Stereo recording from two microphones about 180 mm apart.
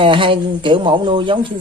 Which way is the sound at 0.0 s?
30° right (ahead or behind).